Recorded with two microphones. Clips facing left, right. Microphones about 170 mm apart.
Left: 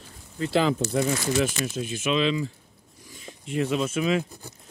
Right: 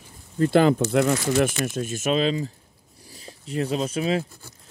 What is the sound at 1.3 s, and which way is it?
Speech, 50° right (ahead or behind).